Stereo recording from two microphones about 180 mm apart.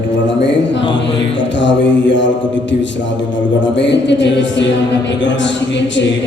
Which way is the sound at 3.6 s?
80° left.